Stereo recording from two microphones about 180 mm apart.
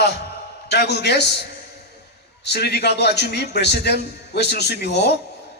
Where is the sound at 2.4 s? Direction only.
65° left (ahead or behind).